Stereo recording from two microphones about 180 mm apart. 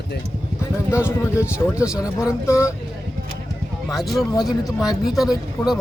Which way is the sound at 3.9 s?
Centre (ahead or behind).